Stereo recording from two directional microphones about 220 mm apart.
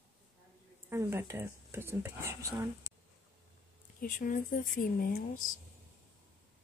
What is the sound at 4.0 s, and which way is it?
Speech, 35° left (ahead or behind).